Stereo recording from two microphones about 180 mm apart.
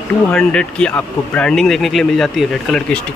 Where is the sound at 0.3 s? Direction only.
5° left (ahead or behind).